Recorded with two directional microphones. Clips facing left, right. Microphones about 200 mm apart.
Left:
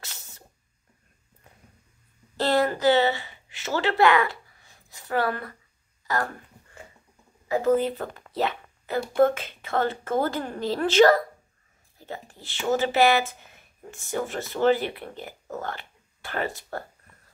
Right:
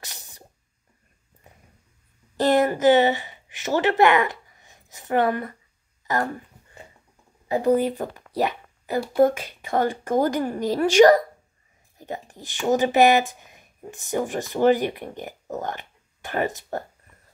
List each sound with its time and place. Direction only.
0.0 s a sound: 15° right (ahead or behind)
2.3 s a woman's voice: 20° right (ahead or behind)
7.4 s a woman's voice: 15° right (ahead or behind)